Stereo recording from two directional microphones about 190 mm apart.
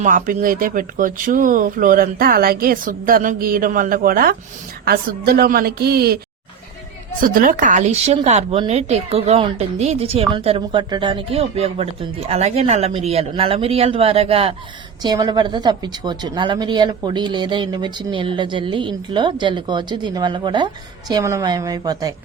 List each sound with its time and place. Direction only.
0.0 s a woman's voice: 45° right (ahead or behind)
7.2 s speech: 45° right (ahead or behind); by 22.1 s 20° right (ahead or behind)